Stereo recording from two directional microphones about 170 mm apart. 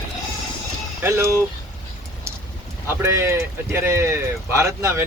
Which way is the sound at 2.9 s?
15° right (ahead or behind).